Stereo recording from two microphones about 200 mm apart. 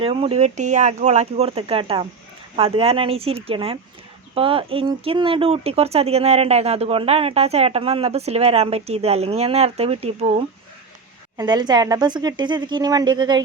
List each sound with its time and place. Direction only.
0.0 s a woman's voice: 30° right (ahead or behind)
11.3 s a woman's voice: 20° right (ahead or behind)